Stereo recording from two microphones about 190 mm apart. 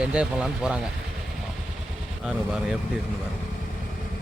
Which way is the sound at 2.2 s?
5° right (ahead or behind).